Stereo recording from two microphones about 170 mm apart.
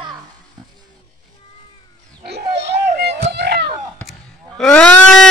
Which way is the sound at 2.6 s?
75° right (ahead or behind).